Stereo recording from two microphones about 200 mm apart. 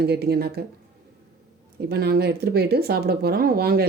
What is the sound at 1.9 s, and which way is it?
Speech, 50° right (ahead or behind).